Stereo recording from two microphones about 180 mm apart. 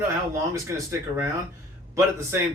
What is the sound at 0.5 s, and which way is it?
Speech, 10° right (ahead or behind).